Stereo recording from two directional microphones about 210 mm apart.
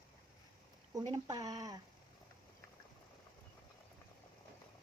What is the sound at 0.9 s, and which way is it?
Speech, 20° right (ahead or behind).